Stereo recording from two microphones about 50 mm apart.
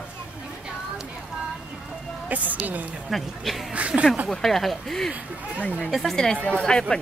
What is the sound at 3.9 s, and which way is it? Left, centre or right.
Speech, centre.